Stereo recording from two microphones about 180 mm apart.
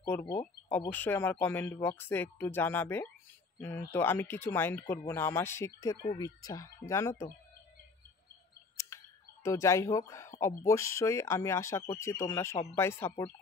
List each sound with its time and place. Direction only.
0.7 s speech: 10° left (ahead or behind)
8.7 s a sound: 15° left (ahead or behind)
10.4 s speech: 15° left (ahead or behind)